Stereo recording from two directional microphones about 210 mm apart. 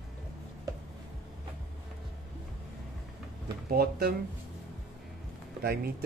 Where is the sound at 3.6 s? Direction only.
50° right (ahead or behind).